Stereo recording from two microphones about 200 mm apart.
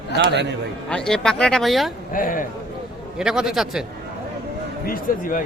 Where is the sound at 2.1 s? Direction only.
45° left (ahead or behind).